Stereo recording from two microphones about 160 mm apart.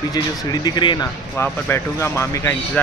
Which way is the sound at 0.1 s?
25° left (ahead or behind).